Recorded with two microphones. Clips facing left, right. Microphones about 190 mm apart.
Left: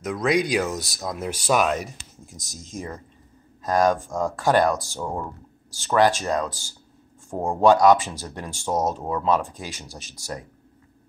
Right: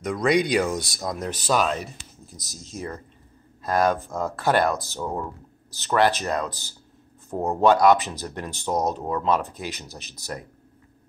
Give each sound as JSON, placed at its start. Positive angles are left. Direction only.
{"t": 0.0, "sound": "speech", "side_deg": 0}